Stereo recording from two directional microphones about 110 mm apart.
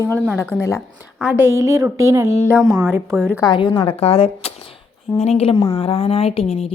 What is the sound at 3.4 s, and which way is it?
Speech, 45° left (ahead or behind).